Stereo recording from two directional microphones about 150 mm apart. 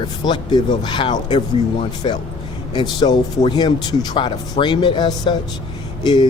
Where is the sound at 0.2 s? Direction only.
30° left (ahead or behind).